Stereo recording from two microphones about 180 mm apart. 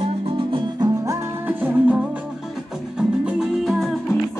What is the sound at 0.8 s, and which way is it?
Music, 15° right (ahead or behind).